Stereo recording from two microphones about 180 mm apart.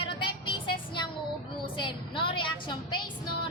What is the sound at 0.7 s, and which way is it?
Music, 25° left (ahead or behind).